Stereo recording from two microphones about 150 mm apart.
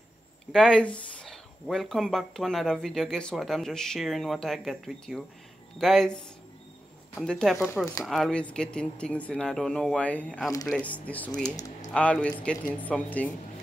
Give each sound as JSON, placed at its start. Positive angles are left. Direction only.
{"t": 0.5, "sound": "speech", "side_deg": 5}
{"t": 11.4, "sound": "speech", "side_deg": 25}
{"t": 11.9, "sound": "speech", "side_deg": 5}